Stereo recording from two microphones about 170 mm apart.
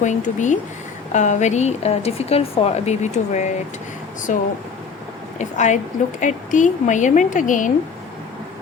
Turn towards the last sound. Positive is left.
turn(degrees=50)  # may be behind; listen again after turning